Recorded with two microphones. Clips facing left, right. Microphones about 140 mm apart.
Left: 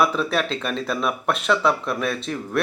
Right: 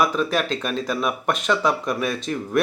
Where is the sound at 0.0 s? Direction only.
Centre (ahead or behind).